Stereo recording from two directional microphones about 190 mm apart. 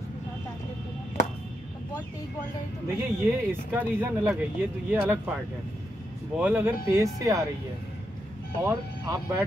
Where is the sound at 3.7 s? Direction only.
10° right (ahead or behind).